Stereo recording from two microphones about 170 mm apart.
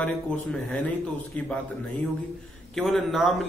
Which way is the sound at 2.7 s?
Centre (ahead or behind).